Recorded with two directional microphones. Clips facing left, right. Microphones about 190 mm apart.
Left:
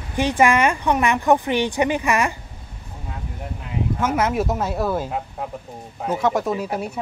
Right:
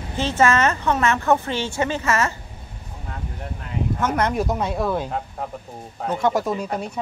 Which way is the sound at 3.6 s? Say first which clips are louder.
Left 1 dB; 5° left (ahead or behind).